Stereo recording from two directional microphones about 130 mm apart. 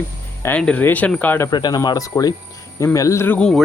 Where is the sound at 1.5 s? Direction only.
30° left (ahead or behind); by 3.5 s 10° left (ahead or behind).